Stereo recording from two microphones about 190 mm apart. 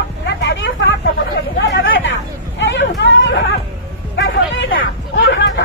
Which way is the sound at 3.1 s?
80° left.